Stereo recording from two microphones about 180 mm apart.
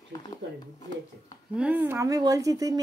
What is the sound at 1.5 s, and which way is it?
Speech, 10° right (ahead or behind).